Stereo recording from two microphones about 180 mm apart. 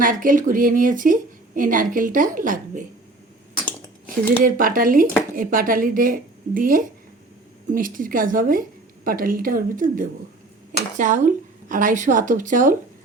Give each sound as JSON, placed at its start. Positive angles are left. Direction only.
{"t": 0.0, "sound": "a woman's voice", "side_deg": -50}
{"t": 4.4, "sound": "a woman's voice", "side_deg": -50}